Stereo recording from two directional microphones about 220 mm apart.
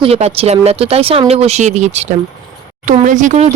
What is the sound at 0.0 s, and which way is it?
Speech, 25° right (ahead or behind).